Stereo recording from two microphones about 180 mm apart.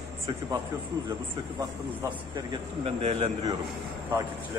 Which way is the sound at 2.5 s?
35° right (ahead or behind).